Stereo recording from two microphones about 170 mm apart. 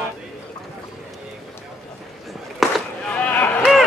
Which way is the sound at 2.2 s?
Centre (ahead or behind).